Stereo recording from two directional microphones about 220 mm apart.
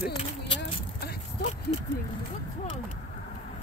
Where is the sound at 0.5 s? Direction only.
45° left (ahead or behind).